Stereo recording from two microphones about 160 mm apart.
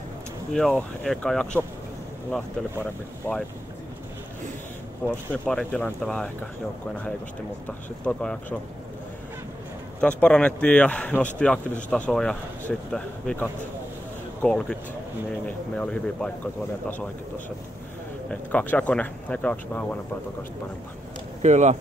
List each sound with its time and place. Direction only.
0.5 s speech: centre (ahead or behind)
2.8 s speech: 10° left (ahead or behind)
5.0 s speech: 10° left (ahead or behind)
8.0 s speech: 5° left (ahead or behind)
9.9 s speech: 5° left (ahead or behind)
18.3 s speech: 10° left (ahead or behind)
21.4 s speech: 45° right (ahead or behind)